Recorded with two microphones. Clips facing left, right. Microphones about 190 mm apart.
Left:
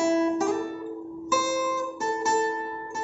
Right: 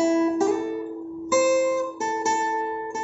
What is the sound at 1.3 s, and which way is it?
Guitar, 25° right (ahead or behind).